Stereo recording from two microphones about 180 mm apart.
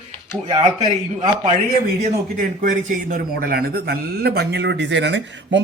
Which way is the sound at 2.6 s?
45° right (ahead or behind).